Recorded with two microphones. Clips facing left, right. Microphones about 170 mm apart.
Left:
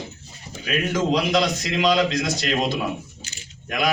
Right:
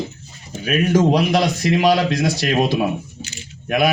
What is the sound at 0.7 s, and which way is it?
A man's voice, 50° right (ahead or behind).